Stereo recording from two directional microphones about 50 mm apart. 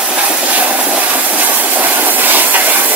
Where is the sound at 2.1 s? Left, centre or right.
Right.